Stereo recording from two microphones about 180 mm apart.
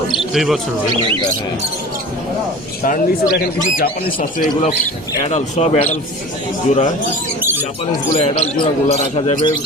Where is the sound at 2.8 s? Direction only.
55° left (ahead or behind).